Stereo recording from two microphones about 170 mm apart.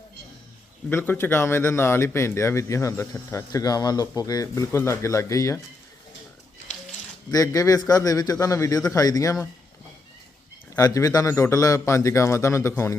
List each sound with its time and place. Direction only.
0.9 s a man's voice: 10° left (ahead or behind)
7.3 s a man's voice: 20° left (ahead or behind)
10.8 s a man's voice: 20° left (ahead or behind)